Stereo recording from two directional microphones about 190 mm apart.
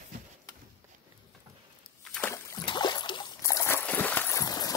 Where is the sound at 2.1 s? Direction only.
10° left (ahead or behind).